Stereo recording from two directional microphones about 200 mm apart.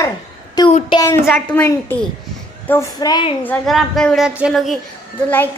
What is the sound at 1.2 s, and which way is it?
Speech, 5° left (ahead or behind).